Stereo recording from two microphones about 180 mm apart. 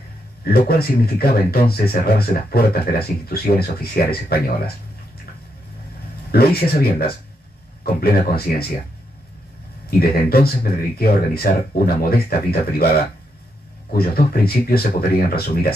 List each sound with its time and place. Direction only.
0.5 s speech: 60° left (ahead or behind)
6.3 s speech: 60° left (ahead or behind)
9.8 s speech: 60° left (ahead or behind)